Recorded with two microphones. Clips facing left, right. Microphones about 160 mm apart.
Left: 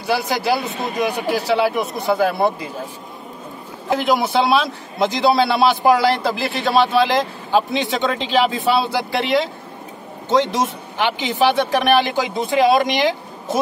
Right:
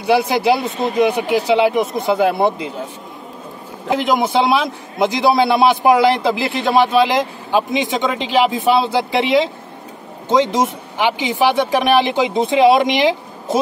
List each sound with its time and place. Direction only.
0.0 s speech: 20° right (ahead or behind)
3.9 s a man's voice: 20° right (ahead or behind)